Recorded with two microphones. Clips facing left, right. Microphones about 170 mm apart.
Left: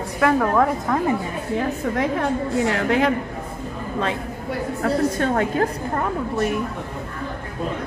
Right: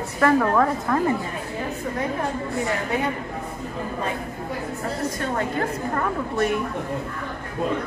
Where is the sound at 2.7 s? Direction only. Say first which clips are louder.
Left 6 dB; 90° left.